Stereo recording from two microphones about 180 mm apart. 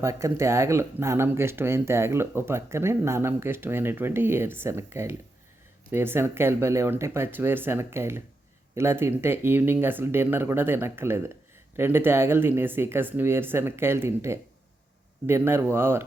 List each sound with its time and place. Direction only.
0.0 s speech: 15° right (ahead or behind)